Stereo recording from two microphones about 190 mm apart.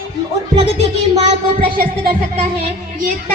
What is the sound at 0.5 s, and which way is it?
Speech, 35° right (ahead or behind).